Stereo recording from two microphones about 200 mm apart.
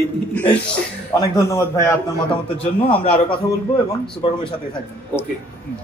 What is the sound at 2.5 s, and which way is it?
A man's voice, 30° left (ahead or behind).